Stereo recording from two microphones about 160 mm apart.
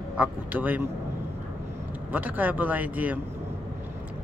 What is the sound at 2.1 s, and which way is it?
Speech, 10° right (ahead or behind).